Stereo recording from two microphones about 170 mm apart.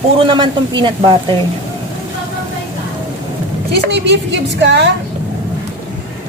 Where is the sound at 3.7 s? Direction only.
80° right.